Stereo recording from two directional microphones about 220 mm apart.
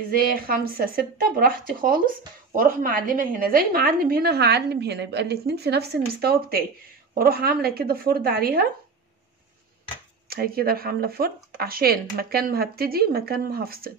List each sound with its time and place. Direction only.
0.1 s a woman's voice: 40° right (ahead or behind)
10.2 s a woman's voice: 45° right (ahead or behind)